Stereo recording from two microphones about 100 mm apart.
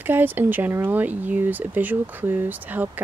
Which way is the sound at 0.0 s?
20° right (ahead or behind).